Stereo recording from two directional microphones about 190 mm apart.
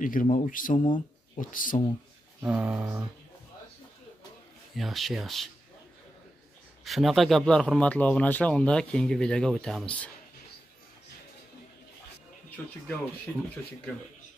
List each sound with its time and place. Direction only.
0.0 s speech: 45° left (ahead or behind)
0.8 s a sound: 25° left (ahead or behind)
1.4 s speech: 45° left (ahead or behind)
2.4 s a sound: 5° right (ahead or behind)
4.7 s a man's voice: centre (ahead or behind)
6.8 s a man's voice: centre (ahead or behind)